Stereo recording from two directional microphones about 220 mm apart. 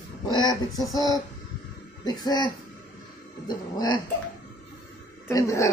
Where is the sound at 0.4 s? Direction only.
20° left (ahead or behind).